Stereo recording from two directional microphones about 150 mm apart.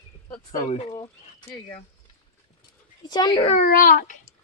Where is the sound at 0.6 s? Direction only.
50° left (ahead or behind).